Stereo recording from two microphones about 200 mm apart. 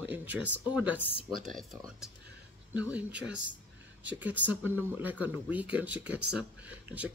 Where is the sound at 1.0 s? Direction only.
55° right (ahead or behind).